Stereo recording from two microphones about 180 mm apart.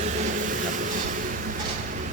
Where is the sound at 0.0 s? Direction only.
40° right (ahead or behind).